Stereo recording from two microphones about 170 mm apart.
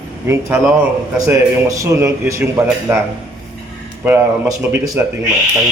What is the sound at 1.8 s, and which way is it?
Speech, 15° right (ahead or behind).